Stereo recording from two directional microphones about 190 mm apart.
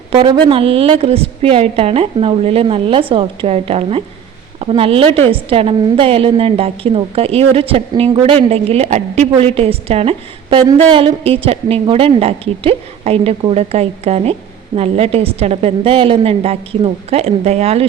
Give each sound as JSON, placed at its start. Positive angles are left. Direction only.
{"t": 0.1, "sound": "a woman's voice", "side_deg": -30}